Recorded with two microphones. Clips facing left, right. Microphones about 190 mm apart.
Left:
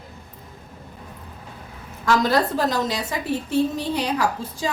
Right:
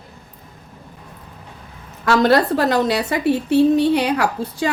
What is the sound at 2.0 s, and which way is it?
A woman's voice, 70° right (ahead or behind).